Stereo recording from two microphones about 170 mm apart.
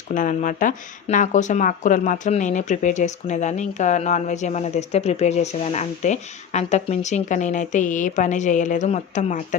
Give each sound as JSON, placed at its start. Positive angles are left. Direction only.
{"t": 0.1, "sound": "speech", "side_deg": 50}